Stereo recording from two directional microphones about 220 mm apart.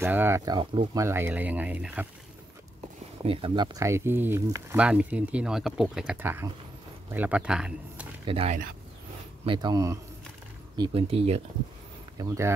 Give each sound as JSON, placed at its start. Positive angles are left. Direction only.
{"t": 0.0, "sound": "speech", "side_deg": -10}
{"t": 3.3, "sound": "speech", "side_deg": -25}
{"t": 8.3, "sound": "speech", "side_deg": -25}
{"t": 12.2, "sound": "speech", "side_deg": -10}